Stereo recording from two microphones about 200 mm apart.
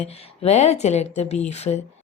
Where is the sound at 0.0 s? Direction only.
30° left (ahead or behind).